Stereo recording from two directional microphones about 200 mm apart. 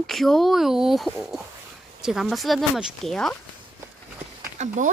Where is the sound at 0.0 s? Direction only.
Centre (ahead or behind).